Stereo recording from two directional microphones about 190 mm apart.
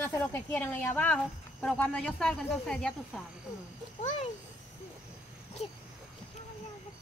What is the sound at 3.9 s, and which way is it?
Speech, 35° left (ahead or behind).